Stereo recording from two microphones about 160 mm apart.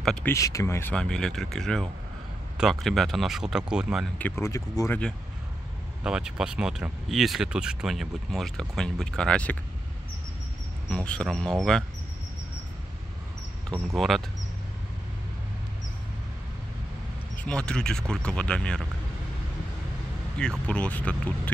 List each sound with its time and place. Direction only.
0.0 s speech: 5° left (ahead or behind)
0.3 s speech: 20° left (ahead or behind); by 4.1 s 5° right (ahead or behind)
4.2 s speech: 20° left (ahead or behind)
6.0 s speech: 5° right (ahead or behind)
11.1 s speech: 5° left (ahead or behind)
13.9 s speech: centre (ahead or behind)
17.4 s speech: 5° left (ahead or behind)
20.6 s speech: 10° left (ahead or behind)